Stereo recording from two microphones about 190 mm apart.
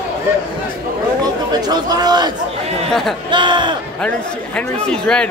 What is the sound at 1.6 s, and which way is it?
Chatter, 20° right (ahead or behind).